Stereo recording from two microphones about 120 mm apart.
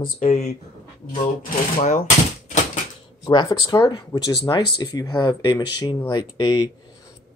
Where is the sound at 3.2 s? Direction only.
35° left (ahead or behind).